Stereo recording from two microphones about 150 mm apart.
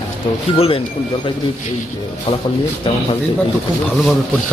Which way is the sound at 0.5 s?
40° left (ahead or behind).